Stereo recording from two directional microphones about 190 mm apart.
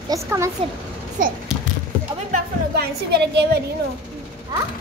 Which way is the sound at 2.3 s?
60° right (ahead or behind).